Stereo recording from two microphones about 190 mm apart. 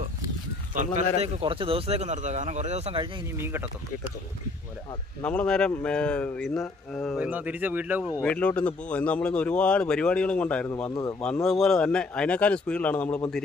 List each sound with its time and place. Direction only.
0.7 s speech: 35° right (ahead or behind)
3.3 s speech: 10° right (ahead or behind)
5.2 s a man's voice: 5° left (ahead or behind)
7.2 s speech: 10° right (ahead or behind)
8.1 s speech: 10° left (ahead or behind)
11.4 s a man's voice: centre (ahead or behind)